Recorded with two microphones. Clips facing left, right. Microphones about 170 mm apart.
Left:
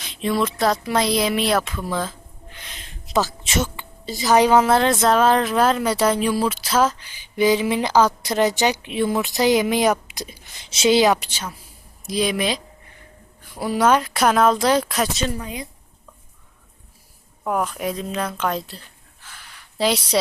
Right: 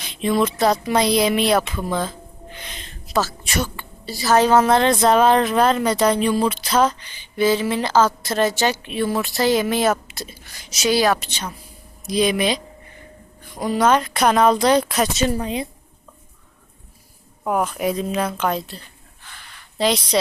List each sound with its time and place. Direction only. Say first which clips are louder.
0.0 s speech: right 2 dB; centre (ahead or behind)
3.1 s a woman's voice: even; 20° left (ahead or behind); by 15.3 s centre (ahead or behind)
15.3 s a woman's voice: right 6 dB; 30° right (ahead or behind)
17.4 s speech: right 2 dB; 5° right (ahead or behind)